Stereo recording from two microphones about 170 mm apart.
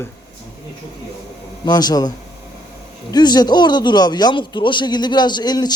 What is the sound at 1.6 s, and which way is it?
Speech, 25° left (ahead or behind).